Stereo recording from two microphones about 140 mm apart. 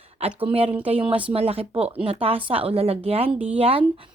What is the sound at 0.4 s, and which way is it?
Speech, 40° right (ahead or behind).